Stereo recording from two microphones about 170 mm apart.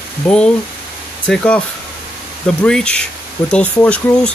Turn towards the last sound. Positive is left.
turn(degrees=5)  # may be behind; listen again after turning